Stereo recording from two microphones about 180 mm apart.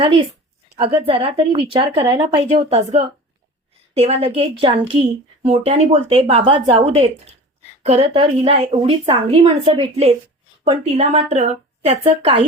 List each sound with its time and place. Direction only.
0.8 s a woman's voice: 30° right (ahead or behind)